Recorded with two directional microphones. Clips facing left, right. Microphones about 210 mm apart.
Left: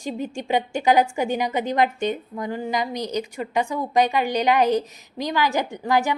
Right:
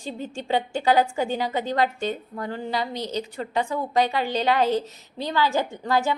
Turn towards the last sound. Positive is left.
turn(degrees=15)  # may be behind; listen again after turning